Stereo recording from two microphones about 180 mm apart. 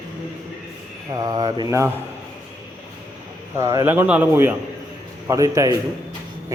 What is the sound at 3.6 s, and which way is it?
A man's voice, 15° right (ahead or behind).